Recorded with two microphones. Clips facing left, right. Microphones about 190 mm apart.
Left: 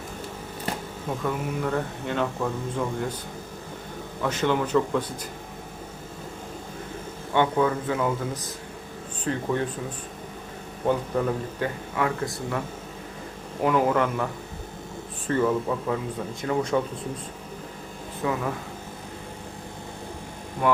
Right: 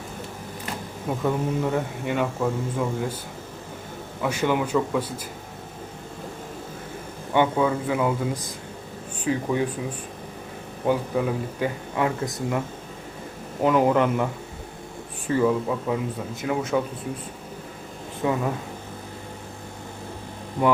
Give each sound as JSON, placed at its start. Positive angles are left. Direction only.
{"t": 1.2, "sound": "speech", "side_deg": -15}
{"t": 4.2, "sound": "speech", "side_deg": -10}
{"t": 7.3, "sound": "speech", "side_deg": -15}
{"t": 10.8, "sound": "speech", "side_deg": -10}
{"t": 11.9, "sound": "speech", "side_deg": -20}
{"t": 15.3, "sound": "a man's voice", "side_deg": -10}
{"t": 18.2, "sound": "speech", "side_deg": -20}